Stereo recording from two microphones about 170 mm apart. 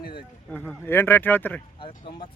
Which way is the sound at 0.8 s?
15° left (ahead or behind).